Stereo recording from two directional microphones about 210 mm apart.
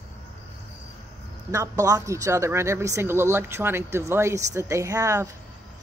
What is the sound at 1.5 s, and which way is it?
Speech, 15° right (ahead or behind).